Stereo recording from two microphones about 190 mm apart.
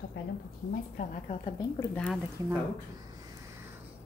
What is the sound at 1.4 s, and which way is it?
Speech, 20° left (ahead or behind).